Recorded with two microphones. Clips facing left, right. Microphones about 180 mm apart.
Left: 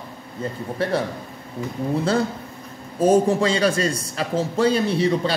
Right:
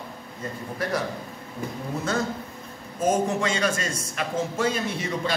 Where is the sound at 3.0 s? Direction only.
35° left (ahead or behind).